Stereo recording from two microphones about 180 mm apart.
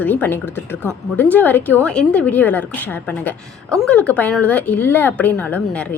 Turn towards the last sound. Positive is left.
turn(degrees=5)  # may be behind; listen again after turning